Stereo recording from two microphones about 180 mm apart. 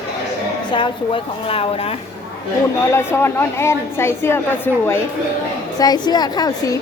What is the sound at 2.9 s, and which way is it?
A woman's voice, 15° left (ahead or behind).